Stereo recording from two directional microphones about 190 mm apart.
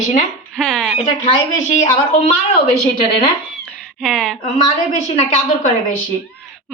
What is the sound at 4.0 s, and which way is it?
Speech, 5° left (ahead or behind).